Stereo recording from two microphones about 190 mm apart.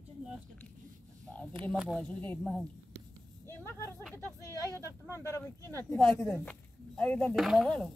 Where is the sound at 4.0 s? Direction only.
Centre (ahead or behind).